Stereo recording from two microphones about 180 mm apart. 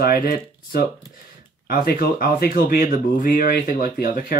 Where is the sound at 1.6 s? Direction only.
55° left (ahead or behind).